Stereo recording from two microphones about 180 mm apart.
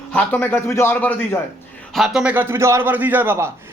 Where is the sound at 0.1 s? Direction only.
10° left (ahead or behind).